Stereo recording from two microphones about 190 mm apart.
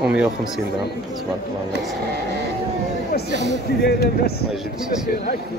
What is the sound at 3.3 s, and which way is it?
Speech, 65° right (ahead or behind).